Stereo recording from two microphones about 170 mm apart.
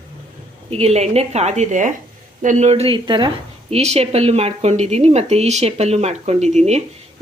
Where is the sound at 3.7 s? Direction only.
40° right (ahead or behind).